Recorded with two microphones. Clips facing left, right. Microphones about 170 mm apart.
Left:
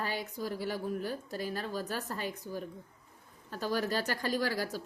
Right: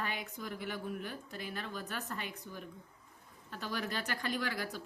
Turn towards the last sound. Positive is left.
turn(degrees=35)  # may be behind; listen again after turning